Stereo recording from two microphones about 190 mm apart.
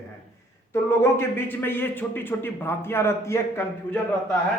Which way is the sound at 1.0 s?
10° left (ahead or behind).